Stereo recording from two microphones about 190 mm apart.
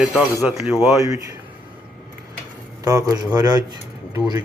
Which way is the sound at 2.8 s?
20° right (ahead or behind).